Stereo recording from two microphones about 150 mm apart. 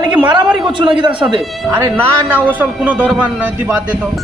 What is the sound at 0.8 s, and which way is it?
Speech, 35° right (ahead or behind).